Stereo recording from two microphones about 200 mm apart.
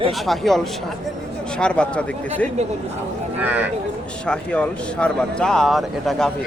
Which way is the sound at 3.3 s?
10° right (ahead or behind).